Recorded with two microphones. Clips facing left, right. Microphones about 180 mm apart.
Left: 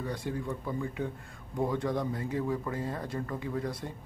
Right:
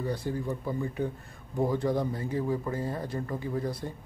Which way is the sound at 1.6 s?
5° right (ahead or behind).